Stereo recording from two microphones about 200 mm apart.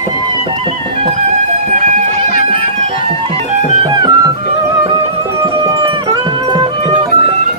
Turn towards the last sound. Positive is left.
turn(degrees=-25)  # may be behind; listen again after turning